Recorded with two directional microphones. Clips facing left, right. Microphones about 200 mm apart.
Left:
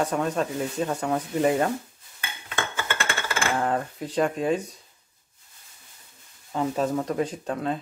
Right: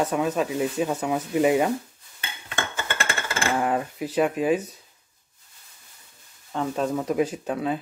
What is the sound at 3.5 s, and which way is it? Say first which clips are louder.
Speech: right 2 dB; 10° right (ahead or behind).